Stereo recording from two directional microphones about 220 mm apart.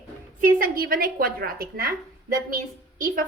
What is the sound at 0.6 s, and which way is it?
A woman's voice, 40° right (ahead or behind).